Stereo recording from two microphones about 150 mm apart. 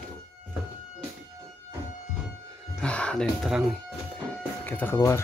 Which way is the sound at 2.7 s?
5° left (ahead or behind).